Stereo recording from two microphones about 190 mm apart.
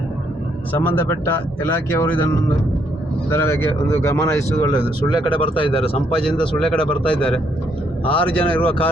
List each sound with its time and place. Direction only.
0.7 s speech: 10° left (ahead or behind)
3.2 s speech: 10° left (ahead or behind); by 6.0 s 30° left (ahead or behind)
6.2 s a man's voice: 5° left (ahead or behind)